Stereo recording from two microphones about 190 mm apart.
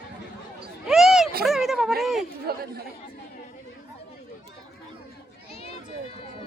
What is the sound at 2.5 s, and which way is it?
Speech, 55° right (ahead or behind).